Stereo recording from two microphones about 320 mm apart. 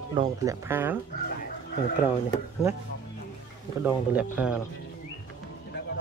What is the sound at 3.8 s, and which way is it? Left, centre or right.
Speech, centre.